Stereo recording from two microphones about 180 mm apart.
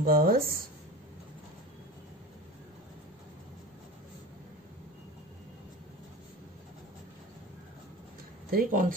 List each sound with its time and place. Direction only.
0.0 s speech: 55° right (ahead or behind)
8.5 s speech: 50° right (ahead or behind)